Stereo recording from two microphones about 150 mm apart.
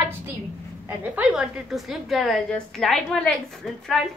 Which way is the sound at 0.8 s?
10° right (ahead or behind).